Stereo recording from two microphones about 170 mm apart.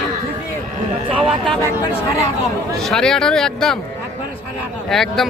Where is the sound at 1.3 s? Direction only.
Centre (ahead or behind).